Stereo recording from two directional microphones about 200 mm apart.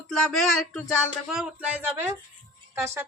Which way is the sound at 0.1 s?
Centre (ahead or behind).